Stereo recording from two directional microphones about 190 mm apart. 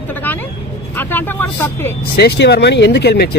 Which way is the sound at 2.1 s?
60° left (ahead or behind).